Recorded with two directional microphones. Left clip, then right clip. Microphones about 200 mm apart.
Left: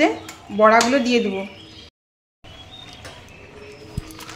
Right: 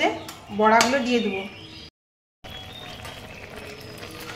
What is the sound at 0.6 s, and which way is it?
Speech, 65° left (ahead or behind).